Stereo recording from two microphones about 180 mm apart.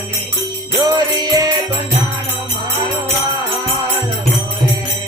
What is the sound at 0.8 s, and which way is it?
Jingle bell, 20° right (ahead or behind).